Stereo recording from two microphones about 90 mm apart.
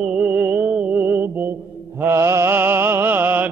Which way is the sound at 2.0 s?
30° right (ahead or behind).